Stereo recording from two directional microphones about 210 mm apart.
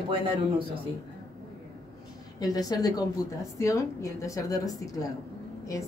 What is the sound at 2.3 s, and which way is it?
A woman's voice, 20° left (ahead or behind).